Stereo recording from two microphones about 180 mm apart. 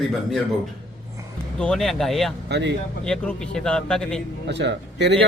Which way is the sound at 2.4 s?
70° right (ahead or behind).